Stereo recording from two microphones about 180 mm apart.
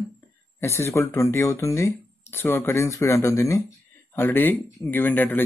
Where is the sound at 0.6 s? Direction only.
15° left (ahead or behind).